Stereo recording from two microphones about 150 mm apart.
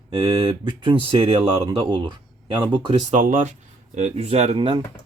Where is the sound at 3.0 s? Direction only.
55° right (ahead or behind).